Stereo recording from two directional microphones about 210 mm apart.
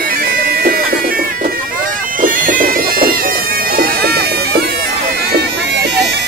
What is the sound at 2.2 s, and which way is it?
Bagpipes, 40° right (ahead or behind).